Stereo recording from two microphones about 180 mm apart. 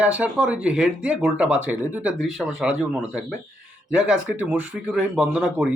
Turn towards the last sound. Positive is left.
turn(degrees=-5)  # may be behind; listen again after turning